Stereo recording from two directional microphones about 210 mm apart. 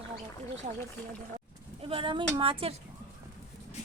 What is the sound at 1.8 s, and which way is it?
Speech, 25° right (ahead or behind).